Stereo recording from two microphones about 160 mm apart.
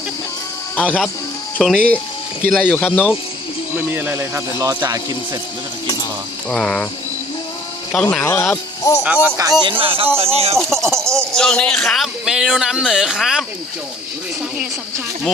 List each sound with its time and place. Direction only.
0.8 s speech: 5° left (ahead or behind)
3.8 s speech: 15° right (ahead or behind)
6.5 s speech: 5° left (ahead or behind)
8.1 s speech: 15° left (ahead or behind)
9.2 s speech: 20° right (ahead or behind); by 10.6 s 40° right (ahead or behind)
10.7 s speech: 15° right (ahead or behind)
11.3 s speech: 5° left (ahead or behind)